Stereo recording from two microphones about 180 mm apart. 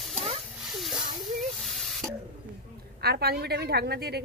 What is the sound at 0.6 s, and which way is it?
Snake, centre (ahead or behind).